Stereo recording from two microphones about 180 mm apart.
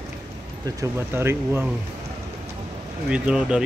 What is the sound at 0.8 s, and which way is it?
Speech, 15° right (ahead or behind).